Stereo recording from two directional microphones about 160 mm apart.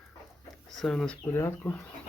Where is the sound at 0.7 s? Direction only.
5° left (ahead or behind).